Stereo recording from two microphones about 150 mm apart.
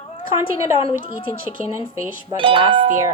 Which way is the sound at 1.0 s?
35° left (ahead or behind).